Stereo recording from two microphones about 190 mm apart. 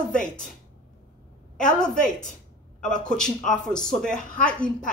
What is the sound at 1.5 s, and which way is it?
Speech, 5° left (ahead or behind).